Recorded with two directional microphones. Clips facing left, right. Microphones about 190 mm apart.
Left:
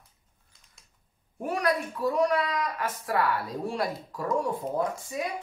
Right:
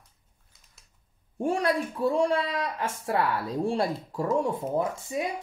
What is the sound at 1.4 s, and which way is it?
Speech, 25° right (ahead or behind).